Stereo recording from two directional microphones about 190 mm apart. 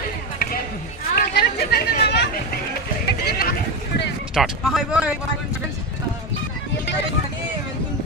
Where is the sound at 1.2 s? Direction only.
60° left (ahead or behind).